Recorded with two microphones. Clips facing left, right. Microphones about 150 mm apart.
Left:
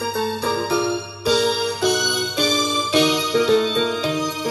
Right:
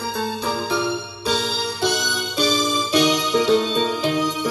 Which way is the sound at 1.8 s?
30° right (ahead or behind).